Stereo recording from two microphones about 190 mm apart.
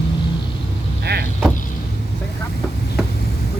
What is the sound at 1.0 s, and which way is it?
Vehicle, 55° right (ahead or behind).